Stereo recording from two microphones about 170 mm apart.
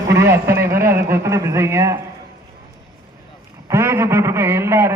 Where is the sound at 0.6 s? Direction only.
60° right (ahead or behind).